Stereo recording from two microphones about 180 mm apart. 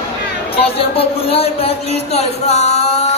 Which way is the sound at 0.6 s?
30° left (ahead or behind).